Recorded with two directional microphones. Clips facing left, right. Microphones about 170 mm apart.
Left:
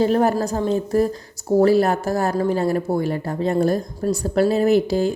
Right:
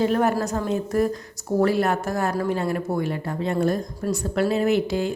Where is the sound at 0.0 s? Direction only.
35° left (ahead or behind).